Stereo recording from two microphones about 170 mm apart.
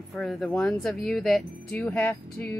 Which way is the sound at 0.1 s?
Centre (ahead or behind).